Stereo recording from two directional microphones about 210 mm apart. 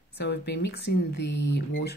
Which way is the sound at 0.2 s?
55° left (ahead or behind).